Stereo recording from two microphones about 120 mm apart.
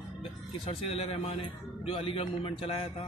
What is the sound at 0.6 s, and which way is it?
A man's voice, 50° left (ahead or behind).